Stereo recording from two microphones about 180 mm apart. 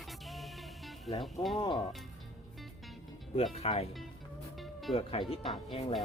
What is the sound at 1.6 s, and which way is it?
Speech, 25° left (ahead or behind).